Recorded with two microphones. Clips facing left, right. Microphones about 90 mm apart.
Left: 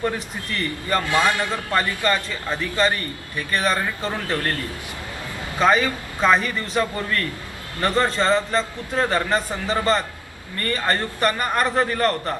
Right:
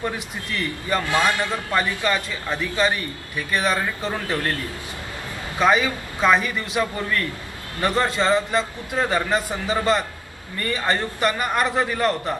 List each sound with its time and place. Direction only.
0.6 s a man's voice: 5° right (ahead or behind)
1.1 s a man's voice: 20° left (ahead or behind)
2.0 s a man's voice: 5° right (ahead or behind)
5.6 s a man's voice: 5° right (ahead or behind)